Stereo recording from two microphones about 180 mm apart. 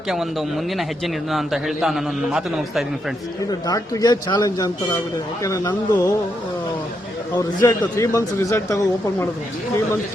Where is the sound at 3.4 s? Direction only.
20° left (ahead or behind).